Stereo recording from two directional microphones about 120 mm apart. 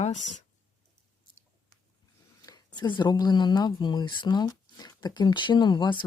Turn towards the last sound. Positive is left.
turn(degrees=40)  # may be behind; listen again after turning